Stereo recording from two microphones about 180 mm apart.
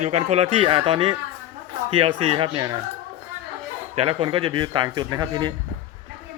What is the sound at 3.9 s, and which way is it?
Speech, 35° right (ahead or behind).